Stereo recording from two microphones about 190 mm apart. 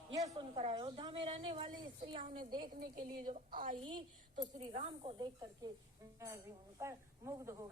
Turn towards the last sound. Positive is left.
turn(degrees=-15)  # may be behind; listen again after turning